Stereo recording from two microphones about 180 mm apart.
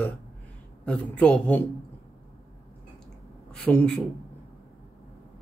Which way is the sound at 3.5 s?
5° left (ahead or behind).